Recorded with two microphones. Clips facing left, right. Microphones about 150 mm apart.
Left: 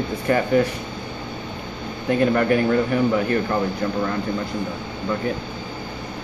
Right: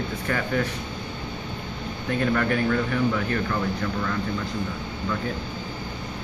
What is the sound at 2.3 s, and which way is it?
Speech, 15° left (ahead or behind).